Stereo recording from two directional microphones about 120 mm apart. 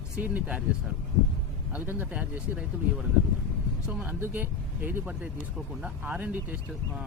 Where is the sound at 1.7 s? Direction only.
15° right (ahead or behind).